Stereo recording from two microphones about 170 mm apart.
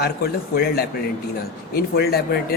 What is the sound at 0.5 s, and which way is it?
A man's voice, 65° left (ahead or behind).